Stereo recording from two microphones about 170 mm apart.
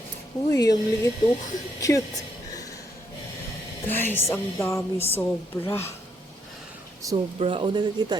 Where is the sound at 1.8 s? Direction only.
20° left (ahead or behind).